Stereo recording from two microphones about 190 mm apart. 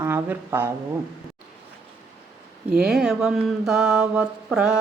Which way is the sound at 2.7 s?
5° right (ahead or behind).